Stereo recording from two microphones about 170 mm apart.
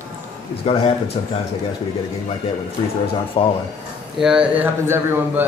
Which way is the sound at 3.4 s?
30° left (ahead or behind).